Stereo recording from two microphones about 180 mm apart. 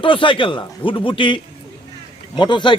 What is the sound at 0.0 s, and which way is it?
A man's voice, 30° left (ahead or behind).